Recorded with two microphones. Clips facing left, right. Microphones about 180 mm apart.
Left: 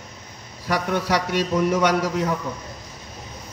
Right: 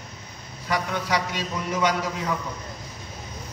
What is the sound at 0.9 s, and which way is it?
A man's voice, 60° left (ahead or behind).